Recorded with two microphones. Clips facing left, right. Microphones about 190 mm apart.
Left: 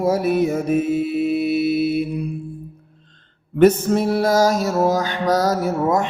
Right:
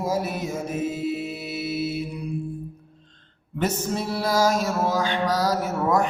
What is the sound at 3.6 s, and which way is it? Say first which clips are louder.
Music: left 11 dB; 55° left (ahead or behind).